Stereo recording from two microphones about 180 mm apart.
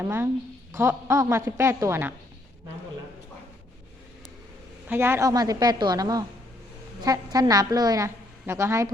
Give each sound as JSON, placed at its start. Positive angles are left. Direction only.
{"t": 0.0, "sound": "a woman's voice", "side_deg": -15}
{"t": 4.9, "sound": "a woman's voice", "side_deg": -15}